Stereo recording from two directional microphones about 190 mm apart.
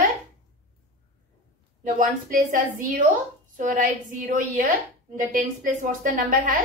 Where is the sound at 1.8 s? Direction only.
45° right (ahead or behind).